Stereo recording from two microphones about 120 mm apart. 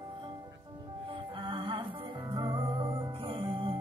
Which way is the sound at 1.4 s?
50° right (ahead or behind).